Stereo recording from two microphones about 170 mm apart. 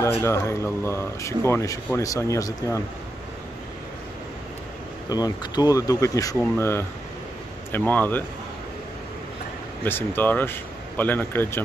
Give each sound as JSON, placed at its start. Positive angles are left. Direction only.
{"t": 0.2, "sound": "speech", "side_deg": 15}
{"t": 5.1, "sound": "speech", "side_deg": 25}
{"t": 9.8, "sound": "speech", "side_deg": 10}